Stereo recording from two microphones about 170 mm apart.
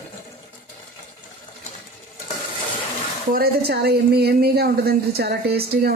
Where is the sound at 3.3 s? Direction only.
70° right (ahead or behind).